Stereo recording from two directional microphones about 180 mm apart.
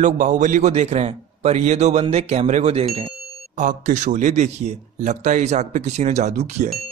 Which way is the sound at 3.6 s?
45° right (ahead or behind).